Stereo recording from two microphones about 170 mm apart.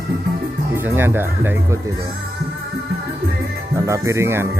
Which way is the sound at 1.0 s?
15° right (ahead or behind).